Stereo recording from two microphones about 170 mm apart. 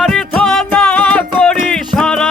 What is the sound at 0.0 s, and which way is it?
Music, 5° left (ahead or behind).